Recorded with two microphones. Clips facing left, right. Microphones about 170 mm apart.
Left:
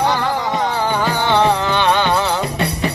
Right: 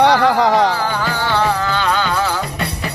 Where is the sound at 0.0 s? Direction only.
75° right (ahead or behind).